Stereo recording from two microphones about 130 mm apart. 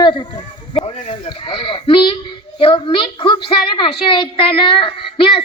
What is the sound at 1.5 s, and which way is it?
A woman's voice, 40° left (ahead or behind).